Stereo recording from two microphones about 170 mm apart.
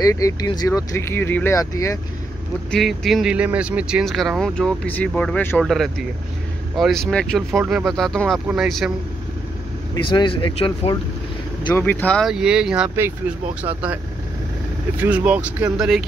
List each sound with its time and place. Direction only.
0.0 s speech: 20° left (ahead or behind)
2.7 s speech: centre (ahead or behind)
9.9 s speech: 30° left (ahead or behind)
11.8 s speech: 10° left (ahead or behind); by 13.1 s 10° right (ahead or behind)
15.0 s speech: 10° right (ahead or behind)